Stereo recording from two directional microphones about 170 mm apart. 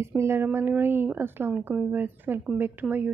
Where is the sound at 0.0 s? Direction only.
15° right (ahead or behind).